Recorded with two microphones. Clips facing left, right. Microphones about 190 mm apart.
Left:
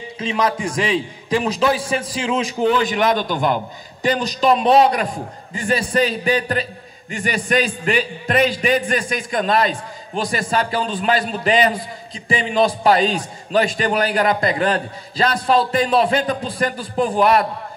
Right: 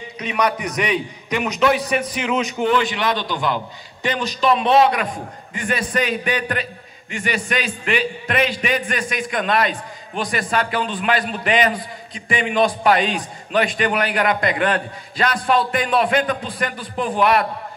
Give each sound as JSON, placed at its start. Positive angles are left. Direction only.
{"t": 0.2, "sound": "a man's voice", "side_deg": 25}
{"t": 2.7, "sound": "a man's voice", "side_deg": 45}